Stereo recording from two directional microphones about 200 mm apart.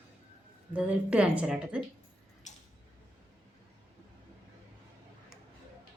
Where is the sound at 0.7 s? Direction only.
5° right (ahead or behind).